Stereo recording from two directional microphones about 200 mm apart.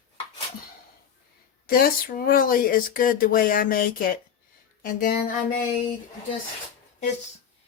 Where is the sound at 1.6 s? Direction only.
45° left (ahead or behind).